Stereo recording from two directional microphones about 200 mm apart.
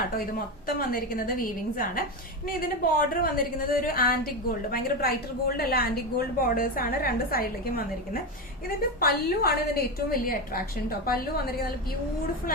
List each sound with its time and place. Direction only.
0.8 s a woman's voice: 45° left (ahead or behind)
9.0 s a woman's voice: 50° left (ahead or behind)